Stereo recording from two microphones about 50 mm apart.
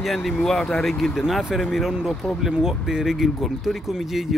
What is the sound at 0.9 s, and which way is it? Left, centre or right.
Speech, centre.